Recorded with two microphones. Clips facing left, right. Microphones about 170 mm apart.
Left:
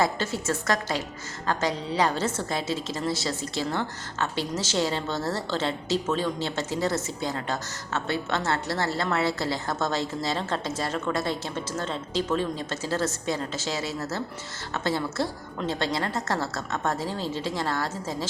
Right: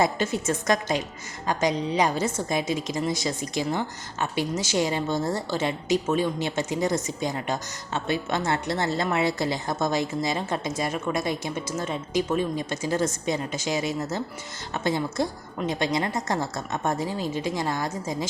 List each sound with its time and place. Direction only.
0.0 s a woman's voice: 20° right (ahead or behind)